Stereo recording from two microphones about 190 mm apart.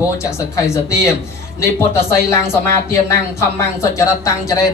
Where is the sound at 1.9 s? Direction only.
15° left (ahead or behind).